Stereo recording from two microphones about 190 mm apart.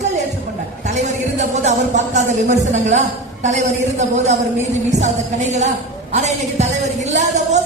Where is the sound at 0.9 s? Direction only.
40° right (ahead or behind).